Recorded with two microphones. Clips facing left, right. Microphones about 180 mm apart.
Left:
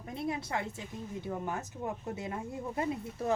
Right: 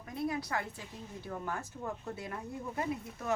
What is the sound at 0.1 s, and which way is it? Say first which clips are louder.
A woman's voice: even; 25° left (ahead or behind).